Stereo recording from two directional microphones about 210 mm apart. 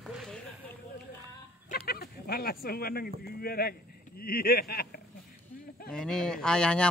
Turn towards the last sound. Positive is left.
turn(degrees=5)  # may be behind; listen again after turning